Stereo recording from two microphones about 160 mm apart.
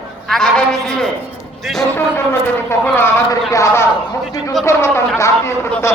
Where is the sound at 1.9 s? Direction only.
15° left (ahead or behind).